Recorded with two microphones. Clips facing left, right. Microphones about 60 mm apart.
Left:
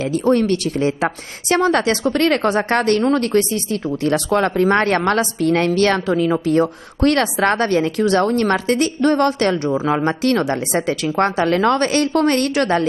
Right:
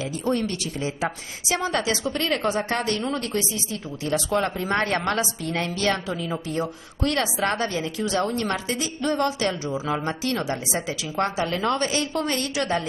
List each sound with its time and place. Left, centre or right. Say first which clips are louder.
0.1 s a woman's voice: left 11 dB; left